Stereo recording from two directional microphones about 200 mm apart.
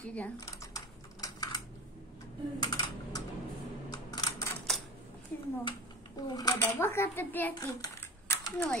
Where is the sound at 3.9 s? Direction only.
20° left (ahead or behind).